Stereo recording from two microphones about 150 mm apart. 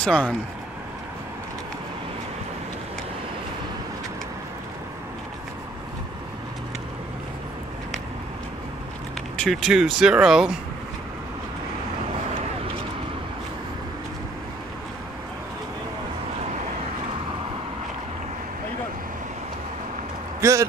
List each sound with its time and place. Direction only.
0.0 s speech: 5° left (ahead or behind)
9.4 s speech: centre (ahead or behind)
20.3 s a sound: 20° right (ahead or behind)